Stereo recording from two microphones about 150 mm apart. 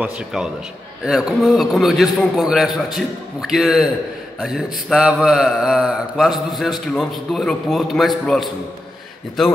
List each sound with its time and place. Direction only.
0.0 s speech: 5° right (ahead or behind)